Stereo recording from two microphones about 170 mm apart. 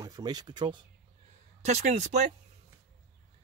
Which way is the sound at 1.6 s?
40° right (ahead or behind).